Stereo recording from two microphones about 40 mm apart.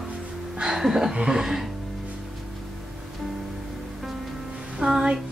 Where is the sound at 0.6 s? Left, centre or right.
Centre.